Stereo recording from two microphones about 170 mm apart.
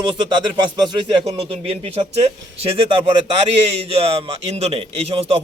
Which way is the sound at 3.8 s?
35° right (ahead or behind).